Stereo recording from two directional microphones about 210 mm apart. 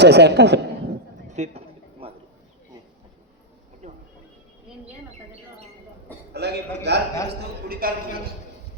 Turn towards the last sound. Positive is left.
turn(degrees=-45)  # may be behind; listen again after turning